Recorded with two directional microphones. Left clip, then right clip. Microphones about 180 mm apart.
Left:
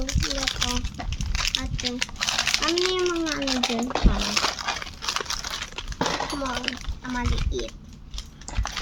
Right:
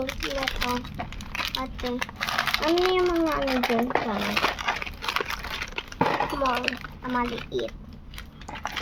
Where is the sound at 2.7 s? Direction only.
15° left (ahead or behind).